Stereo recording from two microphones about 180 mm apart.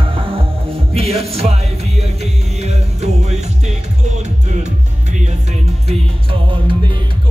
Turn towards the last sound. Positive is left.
turn(degrees=-30)  # may be behind; listen again after turning